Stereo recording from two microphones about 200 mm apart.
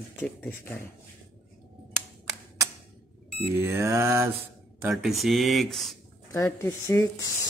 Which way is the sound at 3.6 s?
15° right (ahead or behind).